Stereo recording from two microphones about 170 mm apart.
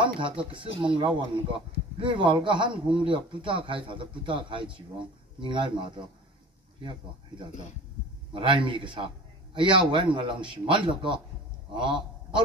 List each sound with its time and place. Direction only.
0.0 s a man's voice: 30° right (ahead or behind)